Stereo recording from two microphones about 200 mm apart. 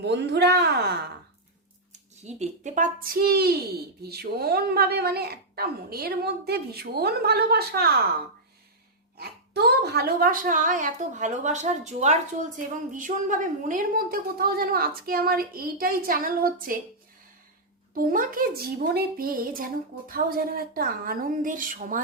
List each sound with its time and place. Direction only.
0.0 s a woman's voice: 60° right (ahead or behind)
1.9 s speech: 35° right (ahead or behind); by 8.0 s 55° right (ahead or behind)
9.1 s speech: 55° right (ahead or behind)
17.9 s speech: 45° right (ahead or behind)